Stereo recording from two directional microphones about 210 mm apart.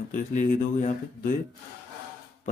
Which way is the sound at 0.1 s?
35° left (ahead or behind).